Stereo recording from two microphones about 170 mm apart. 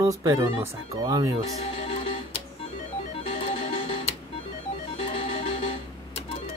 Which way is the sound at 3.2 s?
35° left (ahead or behind).